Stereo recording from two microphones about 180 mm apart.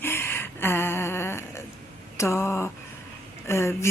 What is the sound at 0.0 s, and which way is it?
Gasp, 15° left (ahead or behind).